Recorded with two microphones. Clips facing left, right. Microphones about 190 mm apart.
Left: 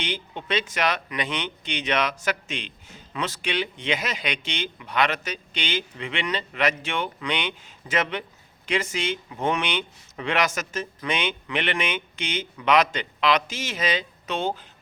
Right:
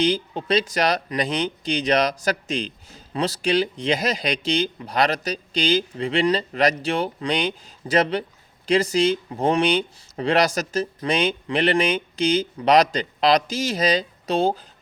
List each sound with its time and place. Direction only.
0.0 s speech: 35° right (ahead or behind)